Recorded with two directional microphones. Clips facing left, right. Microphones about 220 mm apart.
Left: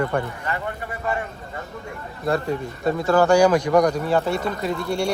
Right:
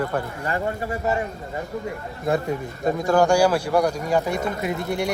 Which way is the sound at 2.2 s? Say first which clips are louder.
Even; centre (ahead or behind).